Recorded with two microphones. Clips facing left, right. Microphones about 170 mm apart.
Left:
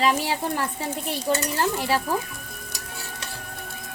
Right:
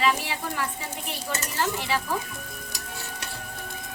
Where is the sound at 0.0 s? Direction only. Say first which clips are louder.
Left 3 dB; 35° left (ahead or behind).